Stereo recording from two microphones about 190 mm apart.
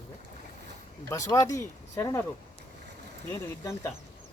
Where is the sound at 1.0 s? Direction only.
20° left (ahead or behind).